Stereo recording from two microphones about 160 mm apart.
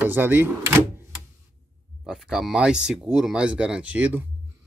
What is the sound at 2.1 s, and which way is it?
Speech, 5° right (ahead or behind).